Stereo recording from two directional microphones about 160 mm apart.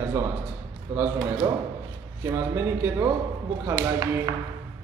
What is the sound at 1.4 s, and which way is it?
Speech, 25° right (ahead or behind).